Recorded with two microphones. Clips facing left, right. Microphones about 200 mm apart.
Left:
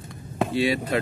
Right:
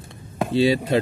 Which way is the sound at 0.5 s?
25° right (ahead or behind).